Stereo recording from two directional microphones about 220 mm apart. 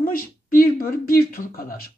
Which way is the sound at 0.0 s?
40° left (ahead or behind).